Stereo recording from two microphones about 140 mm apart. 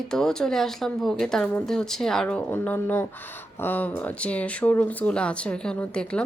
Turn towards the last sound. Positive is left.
turn(degrees=5)  # may be behind; listen again after turning